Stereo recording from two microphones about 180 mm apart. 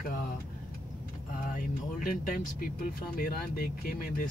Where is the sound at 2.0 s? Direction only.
55° left (ahead or behind).